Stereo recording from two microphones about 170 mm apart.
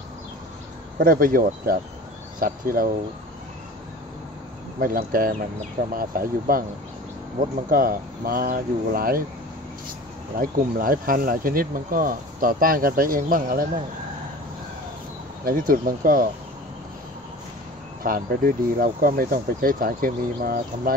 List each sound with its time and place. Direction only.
0.9 s speech: 55° right (ahead or behind)
4.7 s speech: 55° right (ahead or behind)
10.4 s speech: 55° right (ahead or behind)
15.4 s speech: 55° right (ahead or behind)
18.0 s speech: 60° right (ahead or behind)